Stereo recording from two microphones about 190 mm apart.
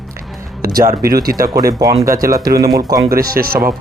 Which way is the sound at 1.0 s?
50° right (ahead or behind).